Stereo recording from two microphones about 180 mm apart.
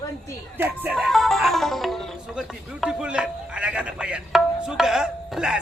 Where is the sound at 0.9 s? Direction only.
Centre (ahead or behind).